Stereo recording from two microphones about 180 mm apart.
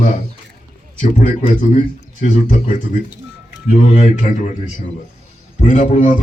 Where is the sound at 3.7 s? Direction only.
40° left (ahead or behind).